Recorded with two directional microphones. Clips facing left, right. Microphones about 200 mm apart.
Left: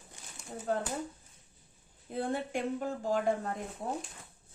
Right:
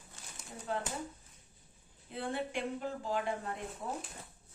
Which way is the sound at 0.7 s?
45° left (ahead or behind).